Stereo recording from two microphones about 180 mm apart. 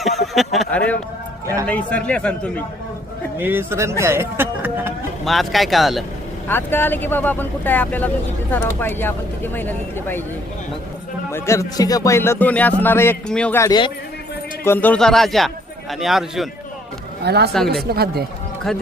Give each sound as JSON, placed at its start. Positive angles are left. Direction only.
{"t": 0.0, "sound": "a sound", "side_deg": 0}
{"t": 1.6, "sound": "speech", "side_deg": 5}
{"t": 3.3, "sound": "speech", "side_deg": -10}
{"t": 5.2, "sound": "a man's voice", "side_deg": 0}
{"t": 6.5, "sound": "speech", "side_deg": 10}
{"t": 11.3, "sound": "speech", "side_deg": 15}
{"t": 14.6, "sound": "a man's voice", "side_deg": 10}
{"t": 17.2, "sound": "speech", "side_deg": -65}